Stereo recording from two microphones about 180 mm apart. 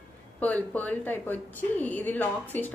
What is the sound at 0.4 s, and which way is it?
A woman's voice, 10° left (ahead or behind).